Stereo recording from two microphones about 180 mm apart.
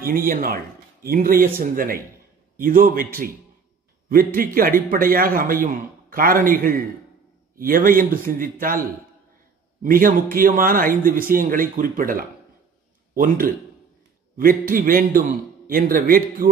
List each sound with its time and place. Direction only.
0.0 s a man's voice: 55° right (ahead or behind)
9.8 s a man's voice: 50° right (ahead or behind)